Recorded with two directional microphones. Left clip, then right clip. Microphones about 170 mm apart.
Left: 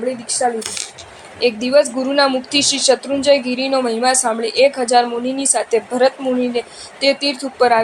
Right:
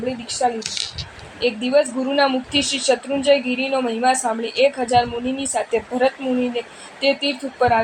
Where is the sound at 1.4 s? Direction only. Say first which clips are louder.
Left 4 dB; 35° left (ahead or behind).